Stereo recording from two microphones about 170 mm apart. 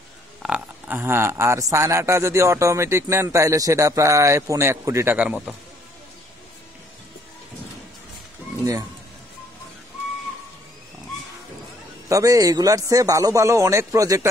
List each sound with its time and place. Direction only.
0.4 s a man's voice: 5° right (ahead or behind)
12.1 s a man's voice: 20° right (ahead or behind)